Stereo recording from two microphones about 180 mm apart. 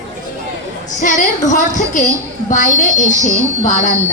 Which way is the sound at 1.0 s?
45° left (ahead or behind).